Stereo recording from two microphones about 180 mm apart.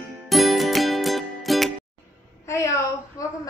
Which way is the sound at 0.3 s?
Centre (ahead or behind).